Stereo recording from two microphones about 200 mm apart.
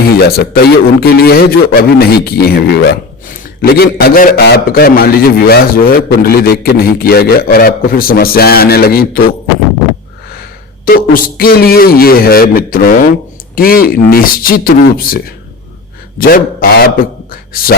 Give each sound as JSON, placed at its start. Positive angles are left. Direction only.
{"t": 0.2, "sound": "a man's voice", "side_deg": 50}
{"t": 10.8, "sound": "a man's voice", "side_deg": 45}